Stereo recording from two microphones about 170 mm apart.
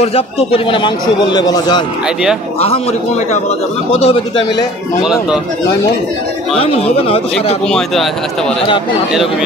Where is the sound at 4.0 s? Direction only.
30° left (ahead or behind).